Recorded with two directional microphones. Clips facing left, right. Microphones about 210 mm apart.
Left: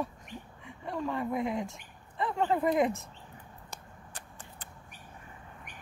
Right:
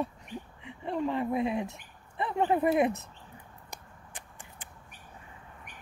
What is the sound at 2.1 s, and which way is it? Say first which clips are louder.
Speech: right 2 dB; 20° right (ahead or behind).